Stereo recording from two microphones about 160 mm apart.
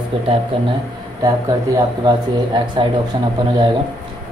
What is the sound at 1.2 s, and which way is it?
Speech, 25° right (ahead or behind).